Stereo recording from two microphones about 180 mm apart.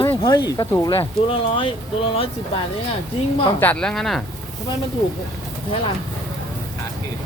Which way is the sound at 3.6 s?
5° left (ahead or behind).